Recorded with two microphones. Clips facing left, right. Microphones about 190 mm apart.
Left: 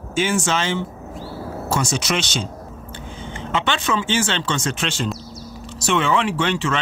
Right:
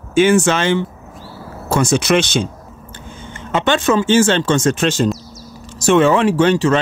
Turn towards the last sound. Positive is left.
turn(degrees=-40)  # may be behind; listen again after turning